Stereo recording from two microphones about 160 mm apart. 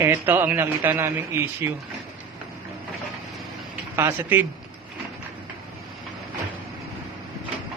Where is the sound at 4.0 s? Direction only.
15° right (ahead or behind).